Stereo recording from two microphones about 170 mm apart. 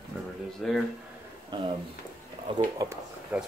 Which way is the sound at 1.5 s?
25° right (ahead or behind).